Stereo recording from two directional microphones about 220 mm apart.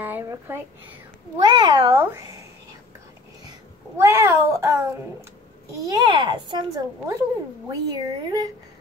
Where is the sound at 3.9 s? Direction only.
10° right (ahead or behind).